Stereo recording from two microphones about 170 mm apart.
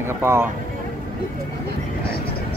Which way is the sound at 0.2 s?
15° right (ahead or behind).